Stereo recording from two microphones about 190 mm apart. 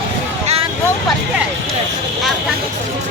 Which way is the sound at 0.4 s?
30° right (ahead or behind).